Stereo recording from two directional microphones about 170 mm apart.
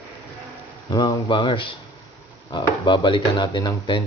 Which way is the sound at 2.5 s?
30° left (ahead or behind).